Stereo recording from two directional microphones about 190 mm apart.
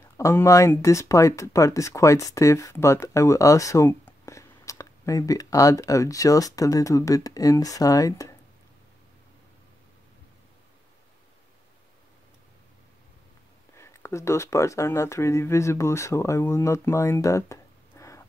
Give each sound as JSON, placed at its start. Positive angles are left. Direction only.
{"t": 0.0, "sound": "speech", "side_deg": 15}
{"t": 13.7, "sound": "speech", "side_deg": 15}